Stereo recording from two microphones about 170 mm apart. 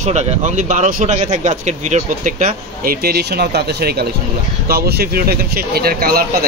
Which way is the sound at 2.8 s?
65° right (ahead or behind).